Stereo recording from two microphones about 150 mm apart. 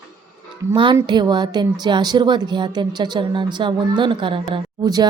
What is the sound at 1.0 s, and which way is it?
A woman's voice, 30° right (ahead or behind).